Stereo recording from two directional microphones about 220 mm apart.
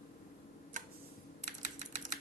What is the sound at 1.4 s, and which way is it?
Typing, 35° right (ahead or behind).